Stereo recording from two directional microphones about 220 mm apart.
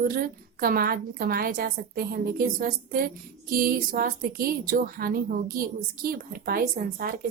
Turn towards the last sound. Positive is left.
turn(degrees=-40)  # may be behind; listen again after turning